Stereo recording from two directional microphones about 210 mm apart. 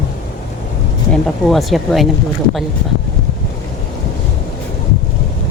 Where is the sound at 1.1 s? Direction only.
Centre (ahead or behind).